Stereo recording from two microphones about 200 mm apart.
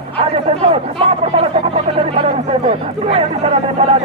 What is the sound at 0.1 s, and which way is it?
A man's voice, 30° right (ahead or behind).